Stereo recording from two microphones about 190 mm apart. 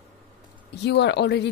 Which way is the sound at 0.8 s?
65° left (ahead or behind).